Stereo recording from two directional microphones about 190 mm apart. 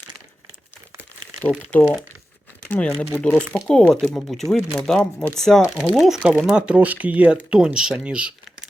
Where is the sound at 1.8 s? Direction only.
10° left (ahead or behind); by 8.3 s 5° right (ahead or behind).